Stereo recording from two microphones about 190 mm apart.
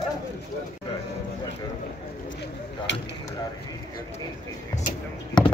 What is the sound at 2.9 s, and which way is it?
Speech, 65° left (ahead or behind).